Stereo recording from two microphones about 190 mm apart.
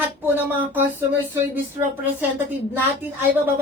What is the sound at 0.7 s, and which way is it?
Speech, 10° right (ahead or behind).